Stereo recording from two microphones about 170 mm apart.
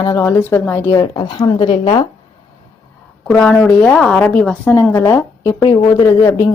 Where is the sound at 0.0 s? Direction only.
20° left (ahead or behind).